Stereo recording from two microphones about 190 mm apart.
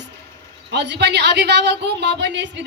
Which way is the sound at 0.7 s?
65° right (ahead or behind).